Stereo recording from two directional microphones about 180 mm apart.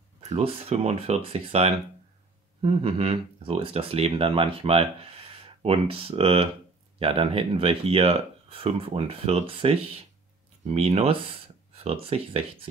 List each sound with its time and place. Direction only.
0.2 s speech: 35° right (ahead or behind)